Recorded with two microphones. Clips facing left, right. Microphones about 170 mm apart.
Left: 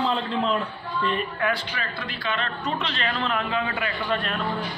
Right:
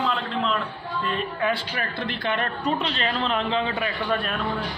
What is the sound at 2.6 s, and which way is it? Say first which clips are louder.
A man's voice: right 3 dB; 35° right (ahead or behind).